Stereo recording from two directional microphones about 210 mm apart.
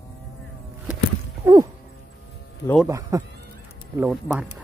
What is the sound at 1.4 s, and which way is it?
Speech, 10° right (ahead or behind).